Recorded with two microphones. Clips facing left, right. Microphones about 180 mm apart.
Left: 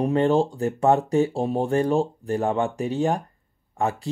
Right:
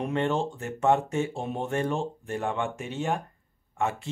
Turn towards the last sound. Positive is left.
turn(degrees=35)  # may be behind; listen again after turning